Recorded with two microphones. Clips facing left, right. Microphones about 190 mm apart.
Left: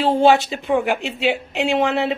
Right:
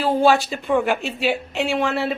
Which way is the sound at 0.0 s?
25° left (ahead or behind).